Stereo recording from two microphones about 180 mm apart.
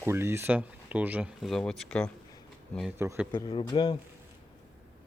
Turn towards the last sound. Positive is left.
turn(degrees=25)  # may be behind; listen again after turning